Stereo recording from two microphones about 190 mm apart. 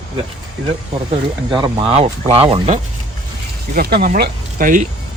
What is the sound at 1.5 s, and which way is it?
Speech, 25° right (ahead or behind).